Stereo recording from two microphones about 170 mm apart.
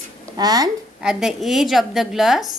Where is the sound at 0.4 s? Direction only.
25° right (ahead or behind).